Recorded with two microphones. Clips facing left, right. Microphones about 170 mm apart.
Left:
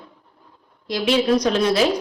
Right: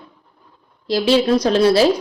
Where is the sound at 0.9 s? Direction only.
30° right (ahead or behind).